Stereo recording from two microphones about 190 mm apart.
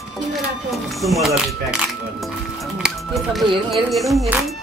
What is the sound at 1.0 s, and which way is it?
Speech, centre (ahead or behind).